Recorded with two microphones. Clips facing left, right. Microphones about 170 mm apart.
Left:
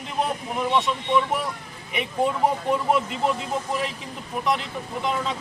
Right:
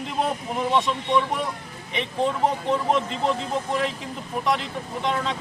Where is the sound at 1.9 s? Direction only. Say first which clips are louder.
Left 1 dB; 10° left (ahead or behind).